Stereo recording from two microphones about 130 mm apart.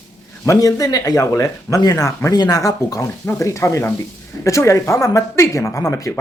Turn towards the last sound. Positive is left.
turn(degrees=25)  # may be behind; listen again after turning